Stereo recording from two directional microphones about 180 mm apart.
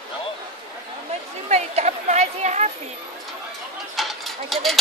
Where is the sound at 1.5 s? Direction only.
40° right (ahead or behind).